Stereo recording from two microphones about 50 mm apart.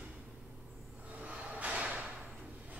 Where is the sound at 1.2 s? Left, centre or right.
Right.